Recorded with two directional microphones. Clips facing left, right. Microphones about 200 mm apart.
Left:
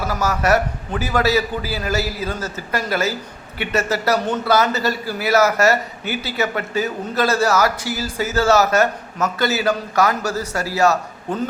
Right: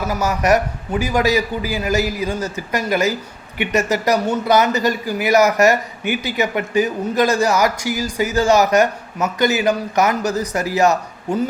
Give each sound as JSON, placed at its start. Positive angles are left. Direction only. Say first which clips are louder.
{"t": 0.1, "sound": "a man's voice", "louder": "right 2 dB", "side_deg": -15}